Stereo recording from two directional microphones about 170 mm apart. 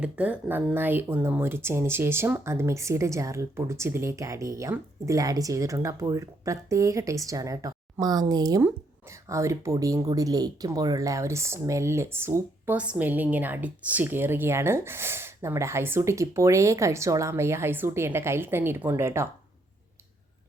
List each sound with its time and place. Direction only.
0.0 s speech: 10° right (ahead or behind)